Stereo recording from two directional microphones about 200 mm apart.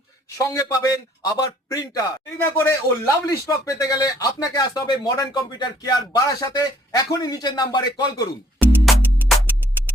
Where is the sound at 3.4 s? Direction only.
15° left (ahead or behind).